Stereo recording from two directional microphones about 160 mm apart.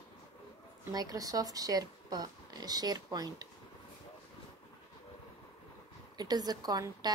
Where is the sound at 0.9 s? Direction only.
20° right (ahead or behind).